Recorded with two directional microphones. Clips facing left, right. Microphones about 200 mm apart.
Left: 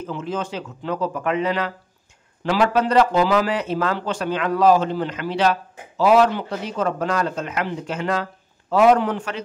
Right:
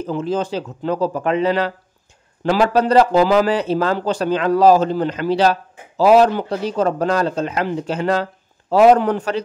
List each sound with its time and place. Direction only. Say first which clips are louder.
0.0 s speech: right 6 dB; 35° right (ahead or behind)